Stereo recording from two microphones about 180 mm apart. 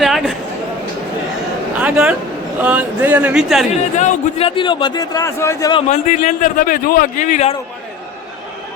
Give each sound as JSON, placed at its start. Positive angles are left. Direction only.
{"t": 0.0, "sound": "a sound", "side_deg": 0}
{"t": 1.8, "sound": "a man's voice", "side_deg": -5}
{"t": 3.9, "sound": "a man's voice", "side_deg": 35}
{"t": 5.9, "sound": "a man's voice", "side_deg": 45}